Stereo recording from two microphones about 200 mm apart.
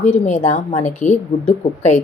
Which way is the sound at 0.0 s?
35° left (ahead or behind).